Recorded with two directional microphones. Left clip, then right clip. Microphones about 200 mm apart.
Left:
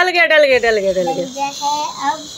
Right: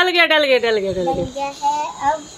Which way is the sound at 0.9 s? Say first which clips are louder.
Left 4 dB; 5° left (ahead or behind).